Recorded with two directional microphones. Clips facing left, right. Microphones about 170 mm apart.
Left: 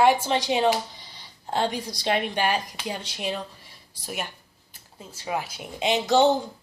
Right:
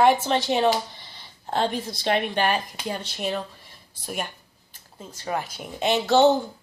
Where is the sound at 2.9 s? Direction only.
50° right (ahead or behind).